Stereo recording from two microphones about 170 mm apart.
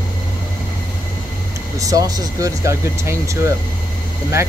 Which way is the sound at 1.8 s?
20° right (ahead or behind).